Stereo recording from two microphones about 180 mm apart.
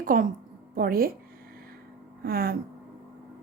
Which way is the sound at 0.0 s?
50° right (ahead or behind).